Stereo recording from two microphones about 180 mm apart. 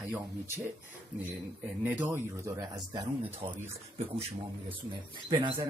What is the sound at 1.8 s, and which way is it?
Speech, 10° right (ahead or behind).